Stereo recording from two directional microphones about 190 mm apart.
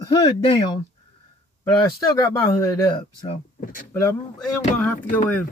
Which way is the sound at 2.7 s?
25° left (ahead or behind).